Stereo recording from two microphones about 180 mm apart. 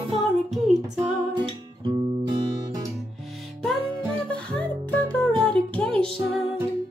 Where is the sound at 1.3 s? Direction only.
30° right (ahead or behind).